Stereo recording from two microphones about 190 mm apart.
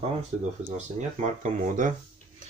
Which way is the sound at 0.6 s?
40° right (ahead or behind).